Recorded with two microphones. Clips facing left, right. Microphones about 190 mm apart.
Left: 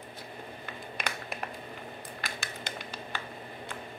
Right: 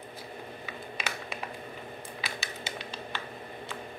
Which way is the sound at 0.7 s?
5° right (ahead or behind).